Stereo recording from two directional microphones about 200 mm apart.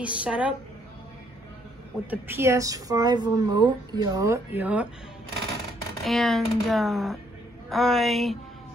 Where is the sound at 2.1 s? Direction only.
10° right (ahead or behind).